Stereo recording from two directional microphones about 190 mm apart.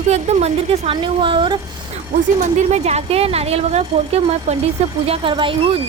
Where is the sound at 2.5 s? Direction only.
35° right (ahead or behind).